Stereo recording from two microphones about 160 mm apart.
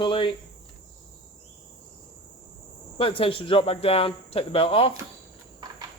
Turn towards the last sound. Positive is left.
turn(degrees=35)  # may be behind; listen again after turning